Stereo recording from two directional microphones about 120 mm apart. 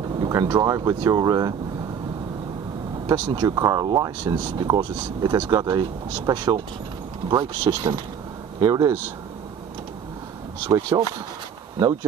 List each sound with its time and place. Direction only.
0.3 s speech: 35° right (ahead or behind)
3.1 s speech: 35° right (ahead or behind)
10.7 s speech: 30° right (ahead or behind)